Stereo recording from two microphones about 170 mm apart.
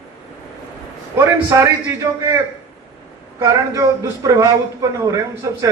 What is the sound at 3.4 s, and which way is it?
A man's voice, 20° right (ahead or behind).